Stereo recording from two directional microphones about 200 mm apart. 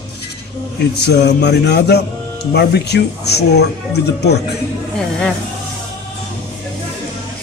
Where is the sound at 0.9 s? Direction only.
55° left (ahead or behind).